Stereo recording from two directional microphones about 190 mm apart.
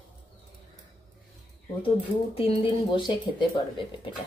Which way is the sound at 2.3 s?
25° left (ahead or behind).